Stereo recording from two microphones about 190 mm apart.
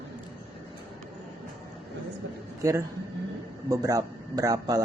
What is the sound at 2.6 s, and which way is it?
A man's voice, 15° right (ahead or behind).